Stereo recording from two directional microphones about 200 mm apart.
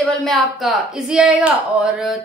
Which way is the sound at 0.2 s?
Centre (ahead or behind).